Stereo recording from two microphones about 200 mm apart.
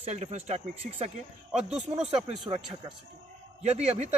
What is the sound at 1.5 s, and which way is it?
Speech, 5° right (ahead or behind).